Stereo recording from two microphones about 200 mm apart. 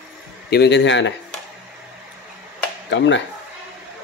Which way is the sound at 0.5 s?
60° left (ahead or behind).